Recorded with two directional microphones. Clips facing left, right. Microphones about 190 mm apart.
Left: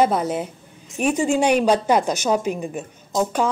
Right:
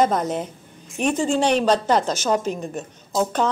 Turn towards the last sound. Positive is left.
turn(degrees=0)  # may be behind; listen again after turning